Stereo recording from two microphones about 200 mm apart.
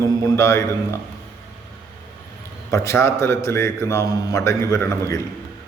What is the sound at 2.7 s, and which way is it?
A man's voice, 15° left (ahead or behind).